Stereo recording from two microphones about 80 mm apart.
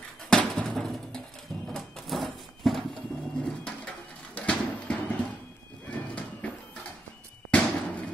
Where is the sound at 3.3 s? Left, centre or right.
Centre.